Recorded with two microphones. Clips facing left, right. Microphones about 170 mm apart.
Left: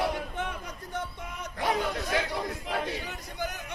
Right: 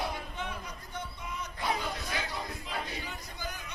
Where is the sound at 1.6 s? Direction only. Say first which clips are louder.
Left 6 dB; 75° left (ahead or behind).